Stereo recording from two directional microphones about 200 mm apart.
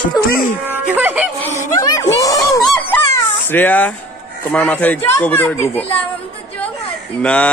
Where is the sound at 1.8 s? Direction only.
15° left (ahead or behind).